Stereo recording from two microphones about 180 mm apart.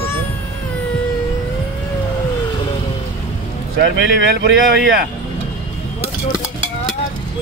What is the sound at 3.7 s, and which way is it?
Speech, 65° right (ahead or behind).